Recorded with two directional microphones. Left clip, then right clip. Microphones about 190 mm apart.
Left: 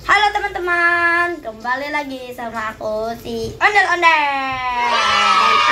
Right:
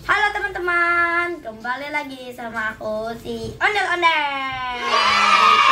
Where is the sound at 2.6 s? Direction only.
15° left (ahead or behind).